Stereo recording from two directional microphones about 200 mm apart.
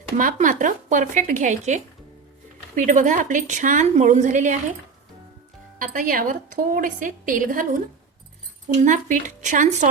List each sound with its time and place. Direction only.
0.2 s speech: 40° right (ahead or behind)
5.8 s a woman's voice: 45° right (ahead or behind)